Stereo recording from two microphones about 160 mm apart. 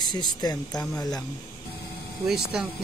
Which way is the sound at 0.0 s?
25° left (ahead or behind).